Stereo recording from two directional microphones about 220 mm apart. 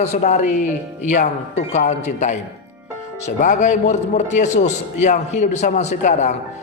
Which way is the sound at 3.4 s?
35° left (ahead or behind).